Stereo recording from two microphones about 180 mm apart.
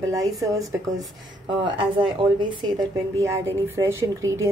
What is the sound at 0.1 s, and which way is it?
Speech, 20° right (ahead or behind).